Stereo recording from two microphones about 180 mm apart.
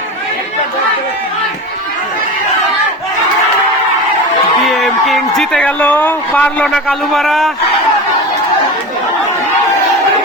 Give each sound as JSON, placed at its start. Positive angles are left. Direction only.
{"t": 4.7, "sound": "a man's voice", "side_deg": 0}